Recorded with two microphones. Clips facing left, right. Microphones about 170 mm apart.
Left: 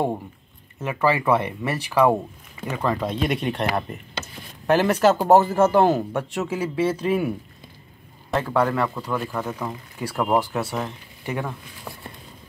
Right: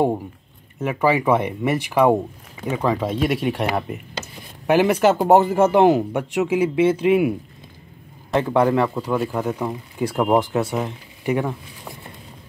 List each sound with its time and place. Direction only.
0.8 s speech: 15° right (ahead or behind)
8.4 s speech: 20° right (ahead or behind)